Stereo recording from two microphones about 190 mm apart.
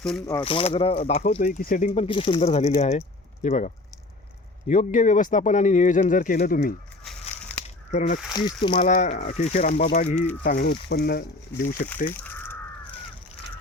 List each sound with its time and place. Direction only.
0.4 s speech: 30° left (ahead or behind)
1.4 s speech: 45° left (ahead or behind)
4.7 s speech: 40° left (ahead or behind)
7.0 s a sound: centre (ahead or behind)
7.9 s speech: 35° left (ahead or behind)
8.4 s speech: 25° left (ahead or behind)
8.8 s speech: 40° left (ahead or behind)
10.4 s speech: 45° left (ahead or behind)
12.0 s caw: 10° left (ahead or behind)